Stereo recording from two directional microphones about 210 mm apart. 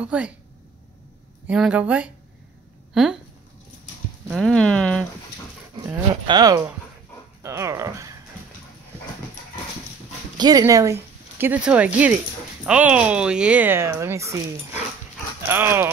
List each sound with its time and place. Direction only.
0.0 s speech: 5° right (ahead or behind)
1.5 s speech: 5° right (ahead or behind)
4.3 s speech: 5° left (ahead or behind)
5.9 s speech: 20° right (ahead or behind)
10.3 s speech: 20° right (ahead or behind)